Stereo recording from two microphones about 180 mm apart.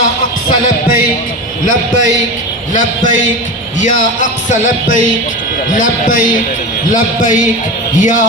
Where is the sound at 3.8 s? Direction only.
45° left (ahead or behind).